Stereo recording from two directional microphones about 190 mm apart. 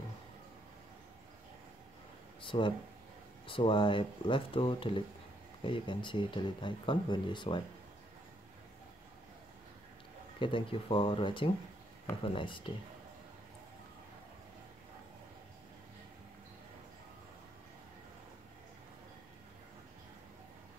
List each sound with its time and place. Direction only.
2.4 s speech: 25° left (ahead or behind)
10.4 s speech: 25° left (ahead or behind)